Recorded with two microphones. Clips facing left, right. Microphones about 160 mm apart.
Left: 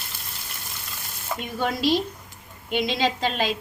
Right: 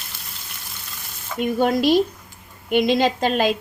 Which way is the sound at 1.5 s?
50° right (ahead or behind).